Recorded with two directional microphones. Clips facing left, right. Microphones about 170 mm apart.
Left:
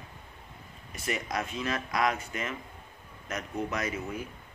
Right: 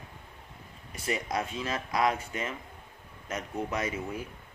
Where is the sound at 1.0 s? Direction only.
25° right (ahead or behind).